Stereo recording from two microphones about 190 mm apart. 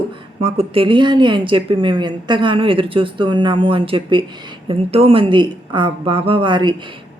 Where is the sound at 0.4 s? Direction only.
30° right (ahead or behind).